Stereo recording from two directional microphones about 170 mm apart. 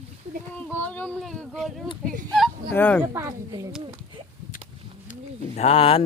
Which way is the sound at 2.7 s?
10° left (ahead or behind).